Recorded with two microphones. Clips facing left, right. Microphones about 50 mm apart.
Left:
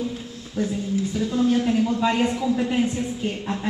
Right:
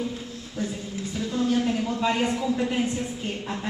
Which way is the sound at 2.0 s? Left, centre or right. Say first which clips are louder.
Left 3 dB; centre.